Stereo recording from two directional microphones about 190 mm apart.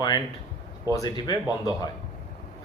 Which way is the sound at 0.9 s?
20° left (ahead or behind).